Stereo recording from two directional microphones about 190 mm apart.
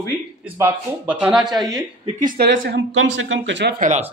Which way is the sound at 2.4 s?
60° right (ahead or behind).